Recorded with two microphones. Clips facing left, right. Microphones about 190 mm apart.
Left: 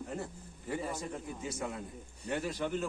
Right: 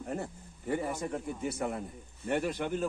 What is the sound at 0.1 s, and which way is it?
A man's voice, 60° right (ahead or behind).